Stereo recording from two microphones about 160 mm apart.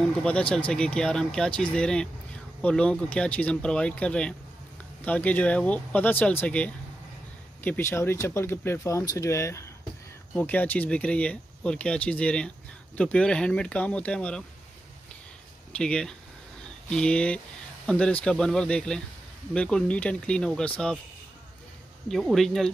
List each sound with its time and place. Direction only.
0.2 s speech: 5° left (ahead or behind)
15.7 s speech: 5° left (ahead or behind)
22.0 s speech: centre (ahead or behind)